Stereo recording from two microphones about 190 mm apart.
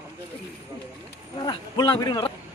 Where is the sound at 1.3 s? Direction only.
20° left (ahead or behind).